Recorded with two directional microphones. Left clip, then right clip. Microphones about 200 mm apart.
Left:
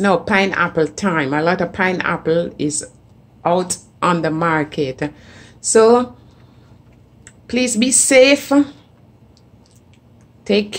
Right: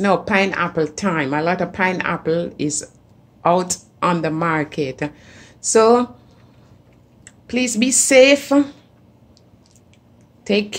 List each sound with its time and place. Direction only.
0.0 s a woman's voice: centre (ahead or behind)
7.2 s a woman's voice: centre (ahead or behind)
10.4 s a woman's voice: centre (ahead or behind)